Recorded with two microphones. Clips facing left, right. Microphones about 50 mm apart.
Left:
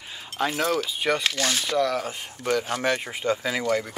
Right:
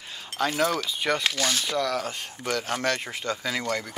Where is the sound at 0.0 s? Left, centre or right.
Centre.